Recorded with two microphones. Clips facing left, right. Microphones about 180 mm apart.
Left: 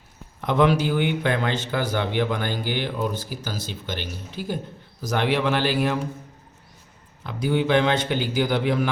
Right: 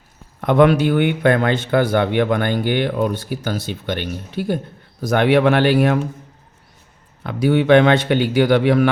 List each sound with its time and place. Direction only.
0.4 s speech: 60° right (ahead or behind)
7.3 s speech: 65° right (ahead or behind)